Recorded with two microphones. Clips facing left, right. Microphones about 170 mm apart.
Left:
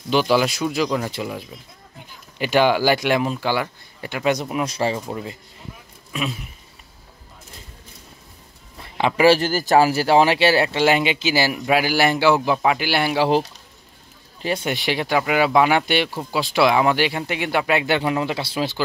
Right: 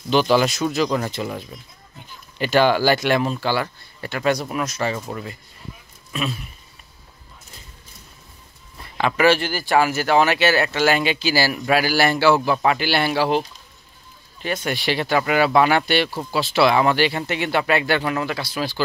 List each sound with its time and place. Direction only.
0.1 s speech: 10° left (ahead or behind)
4.6 s speech: 30° left (ahead or behind)
8.9 s speech: 25° left (ahead or behind)
14.6 s speech: 15° left (ahead or behind)